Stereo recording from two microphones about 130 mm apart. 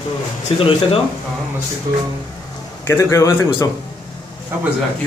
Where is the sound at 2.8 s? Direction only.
20° left (ahead or behind).